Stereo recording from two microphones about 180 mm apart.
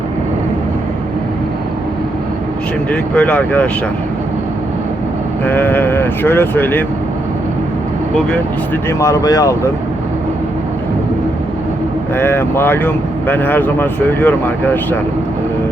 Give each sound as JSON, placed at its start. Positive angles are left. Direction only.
{"t": 2.9, "sound": "speech", "side_deg": 5}
{"t": 5.5, "sound": "speech", "side_deg": 10}
{"t": 9.0, "sound": "speech", "side_deg": 15}
{"t": 12.1, "sound": "speech", "side_deg": 10}